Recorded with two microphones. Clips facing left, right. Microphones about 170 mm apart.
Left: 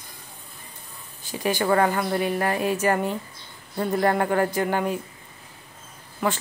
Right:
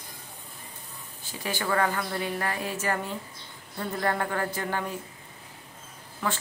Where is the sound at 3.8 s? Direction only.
30° left (ahead or behind).